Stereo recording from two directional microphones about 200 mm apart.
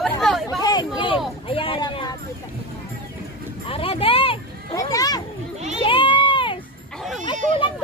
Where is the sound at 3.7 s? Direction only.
30° left (ahead or behind).